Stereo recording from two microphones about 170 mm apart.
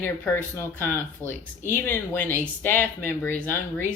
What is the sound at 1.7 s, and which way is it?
Speech, 10° left (ahead or behind).